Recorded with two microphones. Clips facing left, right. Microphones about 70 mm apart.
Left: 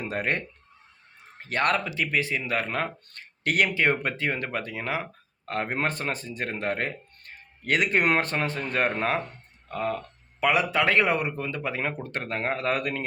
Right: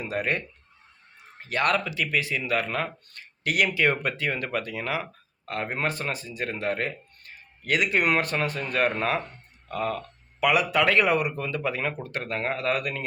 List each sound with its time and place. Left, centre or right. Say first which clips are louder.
0.0 s speech: even; left
3.8 s speech: even; left